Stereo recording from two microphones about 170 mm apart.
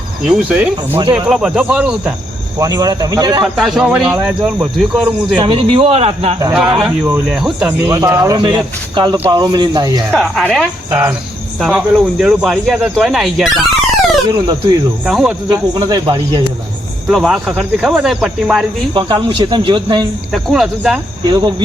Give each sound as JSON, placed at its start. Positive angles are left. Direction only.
{"t": 0.3, "sound": "speech", "side_deg": -5}
{"t": 2.6, "sound": "speech", "side_deg": -20}
{"t": 3.4, "sound": "speech", "side_deg": 0}
{"t": 5.4, "sound": "speech", "side_deg": -30}
{"t": 6.5, "sound": "speech", "side_deg": -5}
{"t": 7.9, "sound": "speech", "side_deg": -20}
{"t": 10.1, "sound": "speech", "side_deg": 0}
{"t": 14.3, "sound": "speech", "side_deg": -25}
{"t": 15.0, "sound": "speech", "side_deg": -5}
{"t": 15.4, "sound": "speech", "side_deg": -25}
{"t": 17.1, "sound": "speech", "side_deg": -5}
{"t": 18.9, "sound": "speech", "side_deg": -25}
{"t": 20.3, "sound": "speech", "side_deg": 0}
{"t": 21.2, "sound": "speech", "side_deg": -25}